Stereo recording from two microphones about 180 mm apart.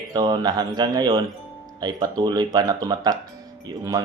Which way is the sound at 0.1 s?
20° right (ahead or behind).